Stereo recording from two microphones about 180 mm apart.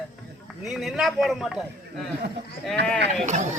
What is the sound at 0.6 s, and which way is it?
Speech, centre (ahead or behind).